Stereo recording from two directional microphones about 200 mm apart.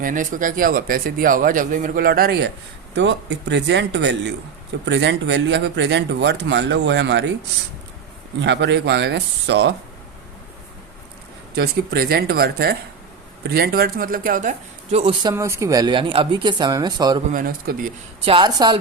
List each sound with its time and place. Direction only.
0.0 s speech: 40° right (ahead or behind)
2.9 s speech: 60° right (ahead or behind)
8.4 s speech: 60° right (ahead or behind)
11.5 s speech: 50° right (ahead or behind); by 15.1 s 30° right (ahead or behind)
15.2 s speech: 15° right (ahead or behind)
17.3 s speech: 45° right (ahead or behind)
18.3 s speech: 20° right (ahead or behind)